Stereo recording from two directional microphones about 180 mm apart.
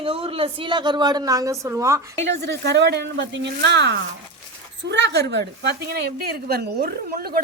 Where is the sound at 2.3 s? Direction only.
70° right (ahead or behind).